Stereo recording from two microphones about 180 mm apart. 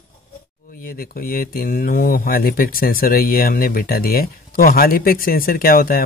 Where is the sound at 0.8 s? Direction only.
55° left (ahead or behind).